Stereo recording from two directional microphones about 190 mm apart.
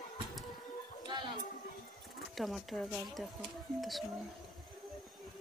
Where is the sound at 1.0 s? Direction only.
25° right (ahead or behind).